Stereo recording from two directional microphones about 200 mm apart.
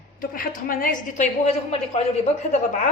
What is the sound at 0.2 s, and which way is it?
A woman's voice, 45° left (ahead or behind).